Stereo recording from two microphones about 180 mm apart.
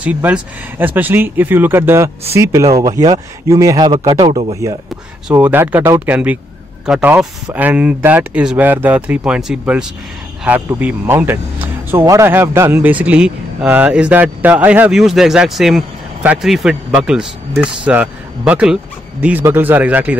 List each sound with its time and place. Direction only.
0.0 s speech: 10° right (ahead or behind); by 4.6 s 30° right (ahead or behind)
5.3 s speech: 10° right (ahead or behind)